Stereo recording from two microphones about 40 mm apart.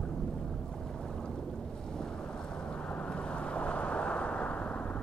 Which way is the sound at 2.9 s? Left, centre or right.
Left.